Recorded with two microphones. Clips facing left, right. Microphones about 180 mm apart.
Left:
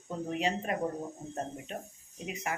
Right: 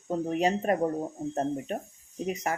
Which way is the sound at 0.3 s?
45° right (ahead or behind).